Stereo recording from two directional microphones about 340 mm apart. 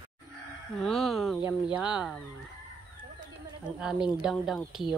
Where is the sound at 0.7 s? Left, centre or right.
Centre.